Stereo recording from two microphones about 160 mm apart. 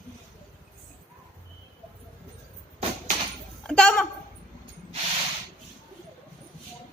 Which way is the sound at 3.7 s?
5° left (ahead or behind).